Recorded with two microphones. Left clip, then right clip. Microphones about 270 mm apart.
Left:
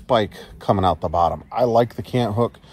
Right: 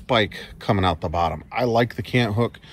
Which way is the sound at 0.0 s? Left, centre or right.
Centre.